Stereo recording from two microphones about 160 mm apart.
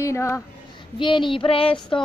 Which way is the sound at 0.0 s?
20° left (ahead or behind).